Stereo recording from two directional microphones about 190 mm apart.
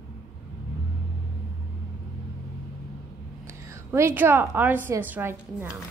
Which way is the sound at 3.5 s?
15° right (ahead or behind).